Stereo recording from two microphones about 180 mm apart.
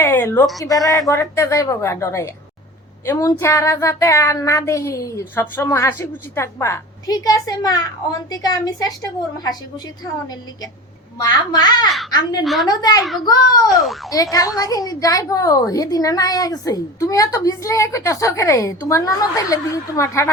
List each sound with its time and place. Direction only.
0.0 s a sound: 15° left (ahead or behind)
0.6 s speech: 20° left (ahead or behind)
11.2 s a woman's voice: 25° left (ahead or behind)
13.7 s speech: centre (ahead or behind)
14.1 s a woman's voice: 20° left (ahead or behind)